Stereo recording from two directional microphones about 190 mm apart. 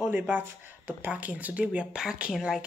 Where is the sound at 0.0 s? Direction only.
10° right (ahead or behind).